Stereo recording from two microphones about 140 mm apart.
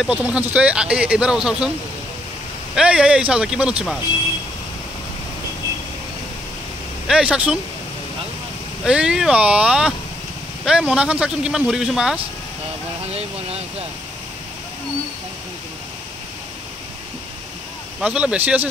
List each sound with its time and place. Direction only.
0.0 s speech: 10° right (ahead or behind)
2.7 s speech: 5° right (ahead or behind)
7.1 s speech: 5° right (ahead or behind)
8.8 s speech: 5° right (ahead or behind)
13.1 s vehicle: 45° right (ahead or behind)
18.0 s speech: 10° right (ahead or behind)